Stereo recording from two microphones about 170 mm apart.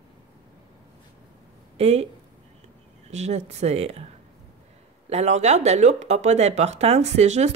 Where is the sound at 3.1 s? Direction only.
40° right (ahead or behind).